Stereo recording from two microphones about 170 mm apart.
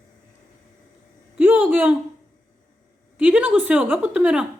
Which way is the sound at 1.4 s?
10° right (ahead or behind).